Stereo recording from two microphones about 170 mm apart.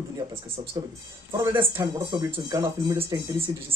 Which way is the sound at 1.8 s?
25° right (ahead or behind).